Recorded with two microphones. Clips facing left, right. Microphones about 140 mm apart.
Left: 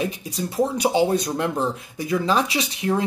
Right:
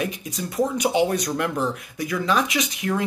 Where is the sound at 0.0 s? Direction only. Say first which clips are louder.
Left 2 dB; 30° left (ahead or behind).